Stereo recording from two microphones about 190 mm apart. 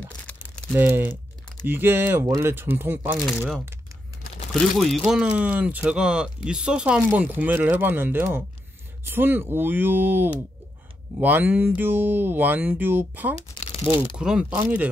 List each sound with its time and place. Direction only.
0.7 s speech: 10° right (ahead or behind)
4.7 s speech: centre (ahead or behind)
13.4 s shuffling cards: 35° left (ahead or behind)
13.9 s speech: 5° right (ahead or behind)